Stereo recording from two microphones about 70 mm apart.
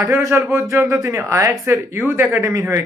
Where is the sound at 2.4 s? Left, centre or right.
Right.